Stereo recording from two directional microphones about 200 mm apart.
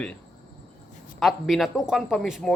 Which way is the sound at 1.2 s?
Centre (ahead or behind).